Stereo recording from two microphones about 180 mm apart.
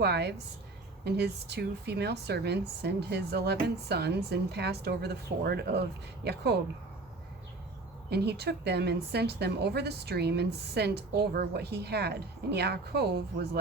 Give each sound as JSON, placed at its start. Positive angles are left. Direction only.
{"t": 0.0, "sound": "a woman's voice", "side_deg": -65}
{"t": 8.1, "sound": "a woman's voice", "side_deg": -65}